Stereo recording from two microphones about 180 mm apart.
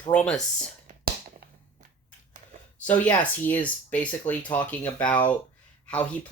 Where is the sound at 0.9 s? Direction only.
45° right (ahead or behind).